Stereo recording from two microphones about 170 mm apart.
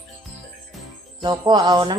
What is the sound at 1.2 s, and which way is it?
Speech, 25° right (ahead or behind).